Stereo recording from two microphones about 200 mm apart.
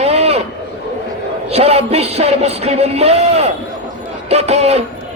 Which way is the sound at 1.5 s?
30° right (ahead or behind).